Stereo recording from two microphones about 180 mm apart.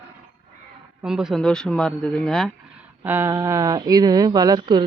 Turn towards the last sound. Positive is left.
turn(degrees=-25)  # may be behind; listen again after turning